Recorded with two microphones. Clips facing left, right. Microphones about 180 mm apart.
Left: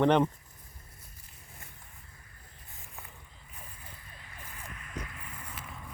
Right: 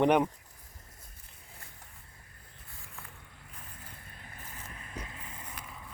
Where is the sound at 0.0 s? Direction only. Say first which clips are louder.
Left 1 dB; 10° right (ahead or behind).